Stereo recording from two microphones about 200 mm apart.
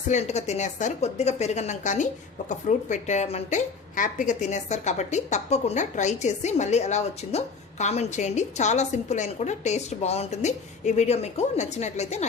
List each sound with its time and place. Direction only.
0.1 s a woman's voice: 35° left (ahead or behind)